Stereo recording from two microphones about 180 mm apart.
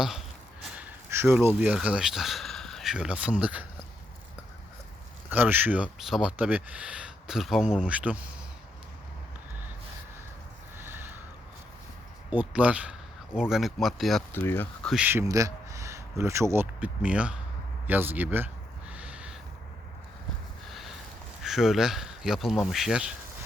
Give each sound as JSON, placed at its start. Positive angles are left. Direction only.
{"t": 0.8, "sound": "speech", "side_deg": -10}
{"t": 5.3, "sound": "speech", "side_deg": -10}
{"t": 10.8, "sound": "a sound", "side_deg": -10}
{"t": 12.3, "sound": "speech", "side_deg": -10}
{"t": 14.3, "sound": "speech", "side_deg": 10}
{"t": 14.9, "sound": "a man's voice", "side_deg": -10}
{"t": 17.8, "sound": "a sound", "side_deg": -10}
{"t": 20.7, "sound": "sniff", "side_deg": 0}
{"t": 21.4, "sound": "speech", "side_deg": 0}